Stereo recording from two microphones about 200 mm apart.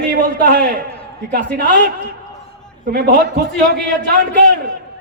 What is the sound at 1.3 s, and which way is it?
A man's voice, 40° right (ahead or behind).